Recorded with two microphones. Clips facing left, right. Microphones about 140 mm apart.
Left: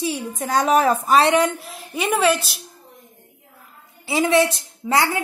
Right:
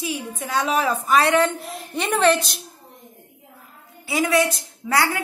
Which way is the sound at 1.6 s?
Centre (ahead or behind).